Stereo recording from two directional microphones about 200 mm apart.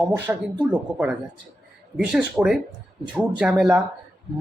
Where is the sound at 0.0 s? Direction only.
10° right (ahead or behind).